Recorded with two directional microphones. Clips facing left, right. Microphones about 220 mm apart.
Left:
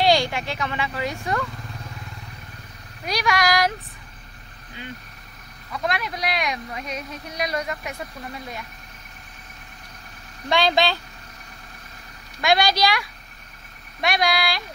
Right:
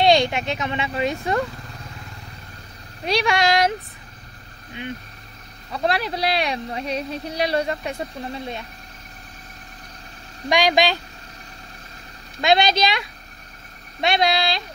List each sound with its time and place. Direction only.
0.0 s speech: 20° right (ahead or behind)
3.1 s speech: 25° right (ahead or behind)
4.8 s speech: 20° right (ahead or behind)
5.7 s speech: 30° right (ahead or behind)
10.5 s speech: 15° right (ahead or behind)
12.4 s speech: 20° right (ahead or behind)